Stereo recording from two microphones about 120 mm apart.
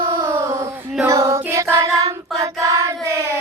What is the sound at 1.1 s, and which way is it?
Child singing, 25° right (ahead or behind).